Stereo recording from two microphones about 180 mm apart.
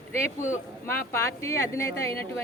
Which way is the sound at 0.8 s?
15° left (ahead or behind).